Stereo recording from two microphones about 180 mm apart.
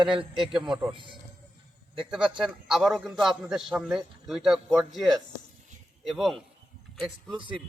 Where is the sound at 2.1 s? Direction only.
5° right (ahead or behind).